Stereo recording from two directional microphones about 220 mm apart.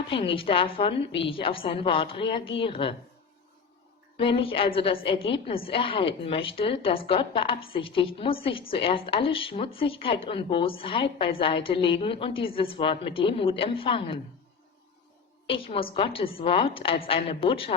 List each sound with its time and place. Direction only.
0.1 s speech: 25° left (ahead or behind)
4.2 s speech: 25° left (ahead or behind)
15.4 s speech: 25° left (ahead or behind)